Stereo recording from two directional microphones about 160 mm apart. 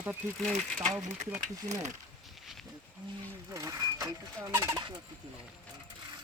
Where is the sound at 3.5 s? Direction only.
20° right (ahead or behind).